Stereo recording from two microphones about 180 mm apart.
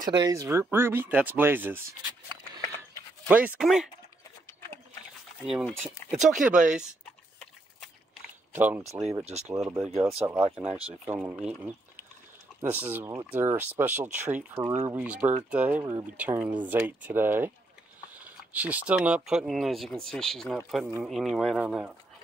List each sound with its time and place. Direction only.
0.0 s speech: 20° right (ahead or behind)
3.3 s speech: 10° right (ahead or behind)
5.4 s speech: centre (ahead or behind)
8.5 s speech: 10° right (ahead or behind)
9.2 s speech: 35° right (ahead or behind)
9.5 s speech: 5° right (ahead or behind)
18.5 s speech: 10° right (ahead or behind)